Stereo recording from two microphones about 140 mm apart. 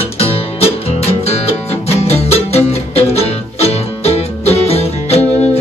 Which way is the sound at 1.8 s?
50° left (ahead or behind).